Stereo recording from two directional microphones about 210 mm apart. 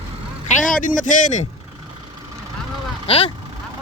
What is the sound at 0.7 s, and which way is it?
Speech, 40° left (ahead or behind).